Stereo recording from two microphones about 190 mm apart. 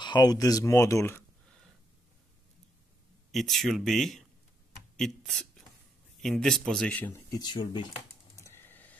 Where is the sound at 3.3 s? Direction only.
Centre (ahead or behind); by 7.9 s 25° left (ahead or behind).